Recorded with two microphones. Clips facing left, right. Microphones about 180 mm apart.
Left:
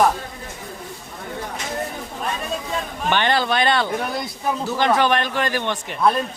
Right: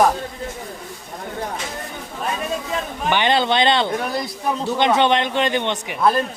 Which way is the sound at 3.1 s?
15° right (ahead or behind).